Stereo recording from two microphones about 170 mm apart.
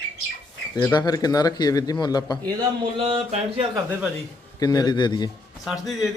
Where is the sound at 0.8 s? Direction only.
20° left (ahead or behind).